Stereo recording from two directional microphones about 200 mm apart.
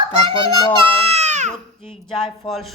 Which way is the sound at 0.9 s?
30° right (ahead or behind).